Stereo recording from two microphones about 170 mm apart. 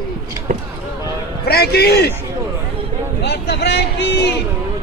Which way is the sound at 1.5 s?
70° left (ahead or behind).